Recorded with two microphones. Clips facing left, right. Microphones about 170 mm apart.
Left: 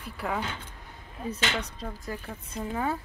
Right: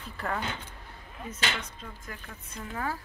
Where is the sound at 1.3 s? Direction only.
35° left (ahead or behind).